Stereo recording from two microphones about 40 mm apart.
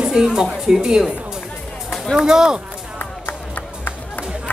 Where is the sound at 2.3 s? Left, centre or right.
Centre.